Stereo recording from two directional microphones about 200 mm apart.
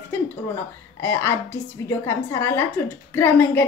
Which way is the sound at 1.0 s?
15° left (ahead or behind).